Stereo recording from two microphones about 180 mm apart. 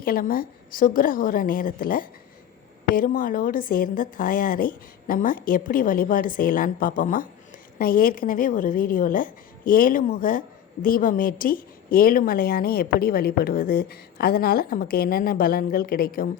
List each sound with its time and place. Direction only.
0.0 s a woman's voice: 55° left (ahead or behind)